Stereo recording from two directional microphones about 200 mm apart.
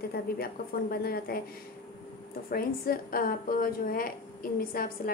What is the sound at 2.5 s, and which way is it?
A woman's voice, 45° left (ahead or behind).